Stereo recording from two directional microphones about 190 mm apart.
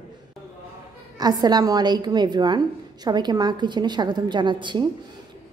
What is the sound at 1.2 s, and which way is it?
A woman's voice, 20° right (ahead or behind).